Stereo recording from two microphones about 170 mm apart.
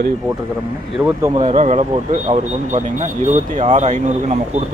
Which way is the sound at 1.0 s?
10° right (ahead or behind).